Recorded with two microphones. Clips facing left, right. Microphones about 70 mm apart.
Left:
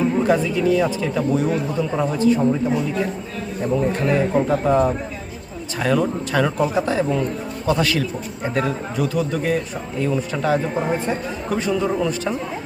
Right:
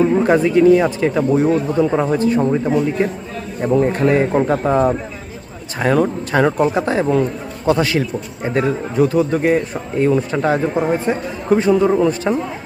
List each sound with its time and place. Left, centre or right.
0.2 s speech: right
4.6 s a man's voice: right
7.8 s a man's voice: right